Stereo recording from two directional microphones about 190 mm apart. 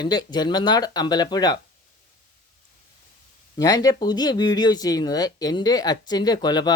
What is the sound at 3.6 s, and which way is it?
Speech, 20° left (ahead or behind).